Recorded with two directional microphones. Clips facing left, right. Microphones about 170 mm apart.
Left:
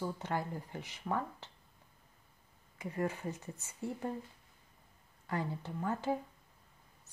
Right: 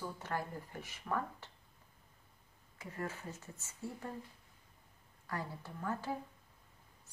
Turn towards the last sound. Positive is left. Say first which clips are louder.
# left 3 dB
turn(degrees=20)  # may be behind; listen again after turning